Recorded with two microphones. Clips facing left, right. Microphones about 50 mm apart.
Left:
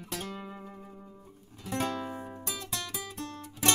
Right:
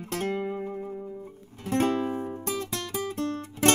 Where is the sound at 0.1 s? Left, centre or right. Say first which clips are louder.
Right 10 dB; right.